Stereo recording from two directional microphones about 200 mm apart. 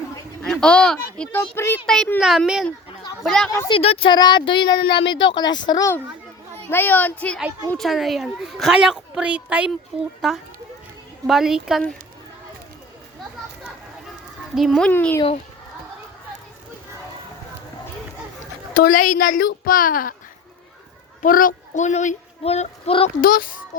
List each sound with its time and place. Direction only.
0.4 s a child's voice: 5° left (ahead or behind)
3.5 s speech: 20° left (ahead or behind)
3.8 s a child's voice: 30° left (ahead or behind); by 11.8 s 5° right (ahead or behind)
14.5 s a child's voice: centre (ahead or behind)
18.8 s a woman's voice: 45° left (ahead or behind)
21.2 s speech: 45° left (ahead or behind)
23.2 s a woman's voice: 45° left (ahead or behind)